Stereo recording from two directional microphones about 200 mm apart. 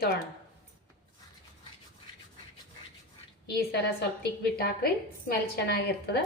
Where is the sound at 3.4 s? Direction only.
50° left (ahead or behind).